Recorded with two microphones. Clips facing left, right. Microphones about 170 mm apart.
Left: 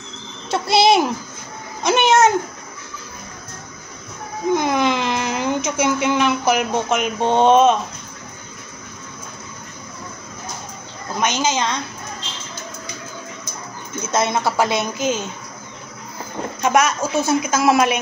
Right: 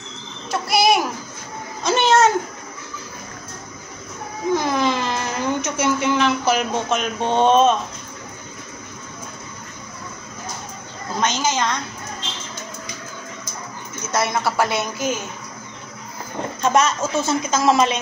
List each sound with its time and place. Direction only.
0.5 s a woman's voice: 25° left (ahead or behind)
4.6 s speech: 15° left (ahead or behind)
11.1 s a woman's voice: 15° left (ahead or behind)
14.1 s a woman's voice: 20° left (ahead or behind)
16.6 s a woman's voice: 15° left (ahead or behind)